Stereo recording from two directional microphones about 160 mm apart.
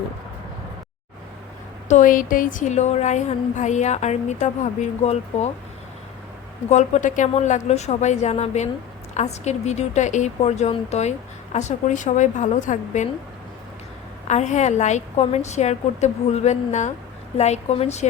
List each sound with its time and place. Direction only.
1.9 s a woman's voice: 55° left (ahead or behind)
6.7 s a woman's voice: 45° left (ahead or behind)
14.3 s a woman's voice: 45° left (ahead or behind)